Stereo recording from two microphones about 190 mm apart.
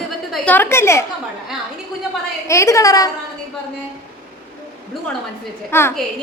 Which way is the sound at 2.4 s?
15° left (ahead or behind).